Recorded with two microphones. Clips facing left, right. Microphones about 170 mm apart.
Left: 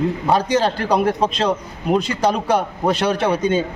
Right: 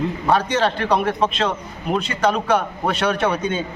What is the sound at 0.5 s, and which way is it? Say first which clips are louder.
A man's voice: left 2 dB; 35° left (ahead or behind).